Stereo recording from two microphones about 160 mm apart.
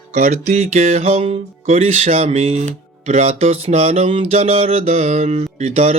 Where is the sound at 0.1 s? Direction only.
45° right (ahead or behind).